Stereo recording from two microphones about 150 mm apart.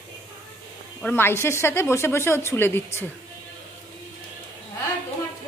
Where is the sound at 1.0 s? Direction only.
15° left (ahead or behind).